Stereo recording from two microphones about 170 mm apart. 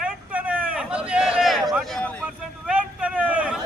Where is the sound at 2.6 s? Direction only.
5° right (ahead or behind).